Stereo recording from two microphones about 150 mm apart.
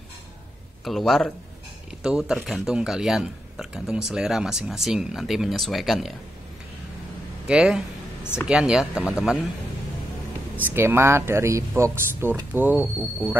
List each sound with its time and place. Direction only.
0.8 s speech: centre (ahead or behind)
7.4 s a sound: 5° right (ahead or behind)
8.5 s speech: 5° right (ahead or behind)
10.5 s speech: 15° right (ahead or behind)